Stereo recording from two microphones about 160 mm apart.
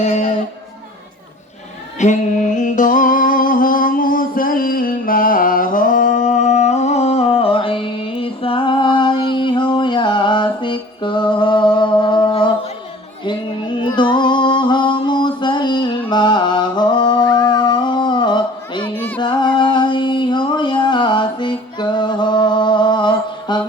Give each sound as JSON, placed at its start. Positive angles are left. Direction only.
{"t": 0.0, "sound": "speech", "side_deg": 45}
{"t": 2.0, "sound": "music", "side_deg": 50}
{"t": 13.8, "sound": "music", "side_deg": 30}
{"t": 18.9, "sound": "a sound", "side_deg": 10}
{"t": 19.2, "sound": "music", "side_deg": 30}